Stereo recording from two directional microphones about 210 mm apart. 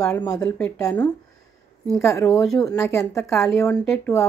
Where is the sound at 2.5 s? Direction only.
15° left (ahead or behind).